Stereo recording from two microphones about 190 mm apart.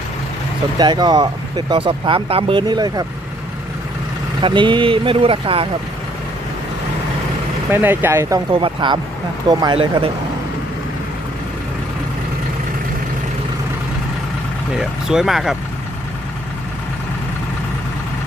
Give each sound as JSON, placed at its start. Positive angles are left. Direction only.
{"t": 0.8, "sound": "speech", "side_deg": -20}
{"t": 4.4, "sound": "speech", "side_deg": -25}
{"t": 7.7, "sound": "speech", "side_deg": -10}
{"t": 8.5, "sound": "speech", "side_deg": -25}
{"t": 14.8, "sound": "speech", "side_deg": -5}